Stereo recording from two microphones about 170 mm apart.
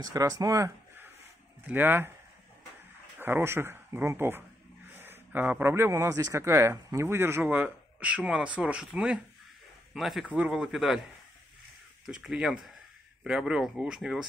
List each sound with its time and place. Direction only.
0.0 s speech: 20° right (ahead or behind)
3.2 s a man's voice: 15° right (ahead or behind)
12.1 s a man's voice: 5° right (ahead or behind)